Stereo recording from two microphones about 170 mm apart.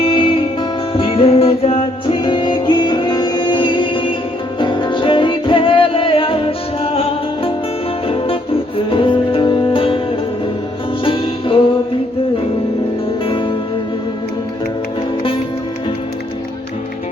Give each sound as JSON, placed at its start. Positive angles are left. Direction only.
{"t": 0.0, "sound": "music", "side_deg": 30}
{"t": 8.0, "sound": "music", "side_deg": 35}
{"t": 11.0, "sound": "music", "side_deg": 30}
{"t": 13.2, "sound": "music", "side_deg": 30}